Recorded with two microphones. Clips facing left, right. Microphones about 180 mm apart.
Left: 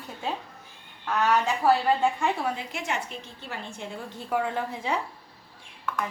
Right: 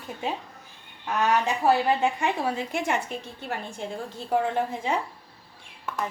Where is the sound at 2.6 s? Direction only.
55° right (ahead or behind).